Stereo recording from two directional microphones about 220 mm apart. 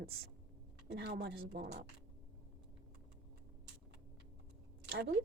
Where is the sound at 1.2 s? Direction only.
50° right (ahead or behind).